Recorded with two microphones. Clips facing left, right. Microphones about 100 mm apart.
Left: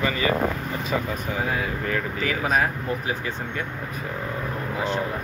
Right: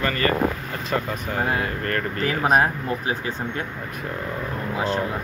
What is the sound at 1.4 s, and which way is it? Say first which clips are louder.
Speech: right 4 dB; 60° right (ahead or behind).